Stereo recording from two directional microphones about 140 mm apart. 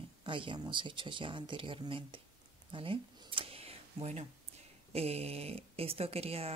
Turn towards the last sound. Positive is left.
turn(degrees=-45)  # may be behind; listen again after turning